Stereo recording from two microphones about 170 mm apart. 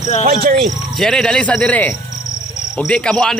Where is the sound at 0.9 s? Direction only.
5° left (ahead or behind).